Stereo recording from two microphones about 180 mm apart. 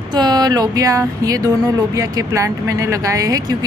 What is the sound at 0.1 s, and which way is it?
Speech, 25° right (ahead or behind).